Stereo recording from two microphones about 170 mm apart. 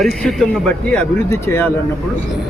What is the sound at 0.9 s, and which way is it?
Speech, 15° left (ahead or behind).